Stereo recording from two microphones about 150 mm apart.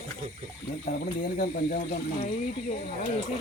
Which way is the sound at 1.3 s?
70° left (ahead or behind).